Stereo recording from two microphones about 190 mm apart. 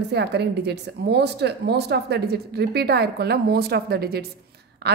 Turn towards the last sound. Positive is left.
turn(degrees=-60)  # may be behind; listen again after turning